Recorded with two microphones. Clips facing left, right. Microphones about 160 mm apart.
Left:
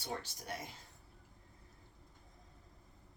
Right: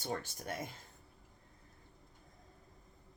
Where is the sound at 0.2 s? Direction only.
50° right (ahead or behind).